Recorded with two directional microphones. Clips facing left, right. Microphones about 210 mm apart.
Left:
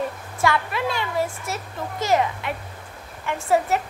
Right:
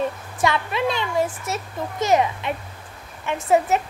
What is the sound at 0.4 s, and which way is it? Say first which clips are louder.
A child's voice: right 1 dB; 20° right (ahead or behind).